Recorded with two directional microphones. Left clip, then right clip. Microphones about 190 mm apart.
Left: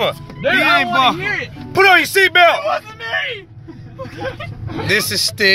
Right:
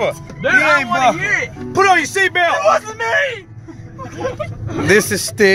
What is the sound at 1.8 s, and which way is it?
Speech, 25° left (ahead or behind).